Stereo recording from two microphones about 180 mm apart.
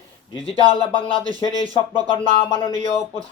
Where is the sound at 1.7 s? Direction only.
30° left (ahead or behind).